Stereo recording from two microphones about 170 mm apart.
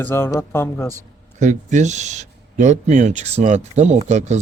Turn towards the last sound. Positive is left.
turn(degrees=-40)  # may be behind; listen again after turning